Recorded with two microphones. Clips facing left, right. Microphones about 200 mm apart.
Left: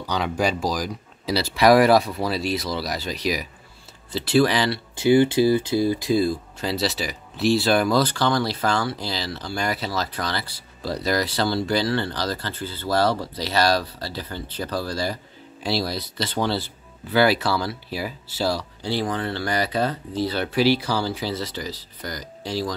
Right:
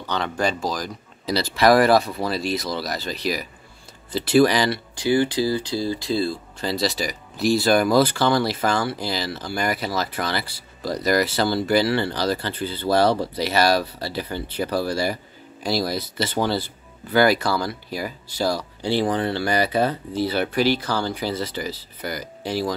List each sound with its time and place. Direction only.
0.0 s speech: 10° left (ahead or behind)
4.1 s speech: centre (ahead or behind)
4.9 s speech: 20° left (ahead or behind)
6.6 s speech: 5° left (ahead or behind)
18.6 s speech: 15° right (ahead or behind)
20.6 s speech: 10° left (ahead or behind)
22.4 s speech: 55° right (ahead or behind)